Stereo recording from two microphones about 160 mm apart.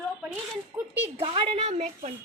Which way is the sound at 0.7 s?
20° right (ahead or behind).